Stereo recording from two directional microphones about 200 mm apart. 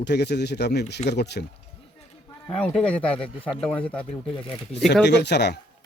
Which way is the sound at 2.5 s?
5° left (ahead or behind).